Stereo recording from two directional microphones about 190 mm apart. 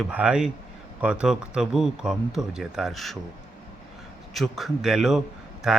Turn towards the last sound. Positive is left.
turn(degrees=0)  # may be behind; listen again after turning